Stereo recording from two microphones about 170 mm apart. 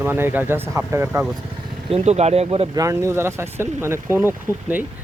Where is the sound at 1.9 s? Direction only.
40° right (ahead or behind).